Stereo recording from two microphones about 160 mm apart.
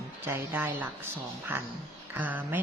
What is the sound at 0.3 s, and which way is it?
Speech, 15° right (ahead or behind).